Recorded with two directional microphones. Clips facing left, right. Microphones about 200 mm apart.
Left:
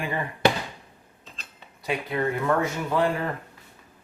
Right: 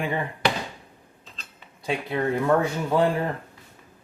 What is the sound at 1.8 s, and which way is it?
Speech, 30° right (ahead or behind).